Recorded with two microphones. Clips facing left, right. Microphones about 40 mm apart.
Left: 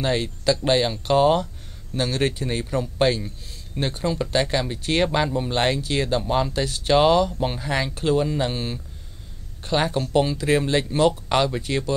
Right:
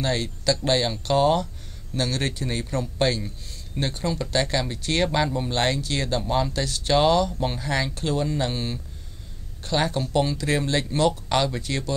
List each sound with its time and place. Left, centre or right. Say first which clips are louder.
0.0 s a man's voice: left 2 dB; centre